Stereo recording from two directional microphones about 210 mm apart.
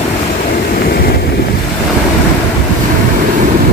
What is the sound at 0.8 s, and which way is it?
Vehicle, 45° left (ahead or behind).